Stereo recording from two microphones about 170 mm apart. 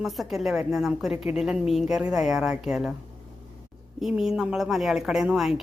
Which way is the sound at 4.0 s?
Centre (ahead or behind).